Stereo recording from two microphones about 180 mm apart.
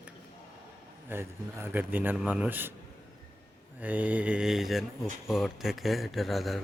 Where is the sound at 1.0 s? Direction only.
15° right (ahead or behind).